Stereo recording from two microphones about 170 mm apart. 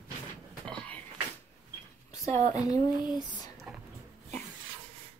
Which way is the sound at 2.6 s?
25° left (ahead or behind).